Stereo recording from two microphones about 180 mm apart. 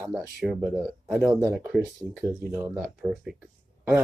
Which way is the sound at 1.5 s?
5° right (ahead or behind).